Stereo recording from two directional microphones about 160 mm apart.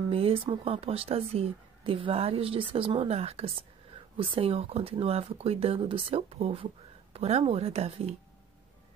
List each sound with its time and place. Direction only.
0.1 s speech: 35° right (ahead or behind)